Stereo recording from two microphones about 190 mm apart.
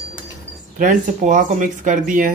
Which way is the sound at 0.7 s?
40° right (ahead or behind).